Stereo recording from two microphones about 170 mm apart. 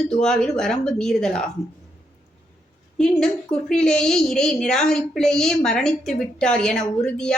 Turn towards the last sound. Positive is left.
turn(degrees=5)  # may be behind; listen again after turning